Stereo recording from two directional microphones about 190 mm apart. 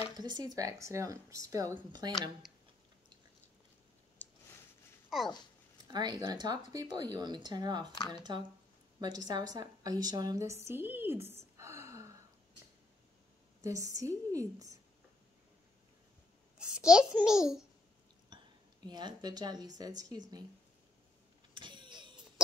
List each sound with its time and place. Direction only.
0.1 s a woman's voice: 20° right (ahead or behind)
4.2 s a sound: 10° left (ahead or behind)
5.1 s a sound: centre (ahead or behind)
5.9 s a woman's voice: 20° right (ahead or behind)
11.5 s gasp: 15° right (ahead or behind)
13.6 s speech: 15° right (ahead or behind)
16.5 s a child's voice: 5° right (ahead or behind)
18.3 s a sound: 25° right (ahead or behind)
18.9 s a woman's voice: 20° right (ahead or behind)
21.5 s vehicle: 25° right (ahead or behind)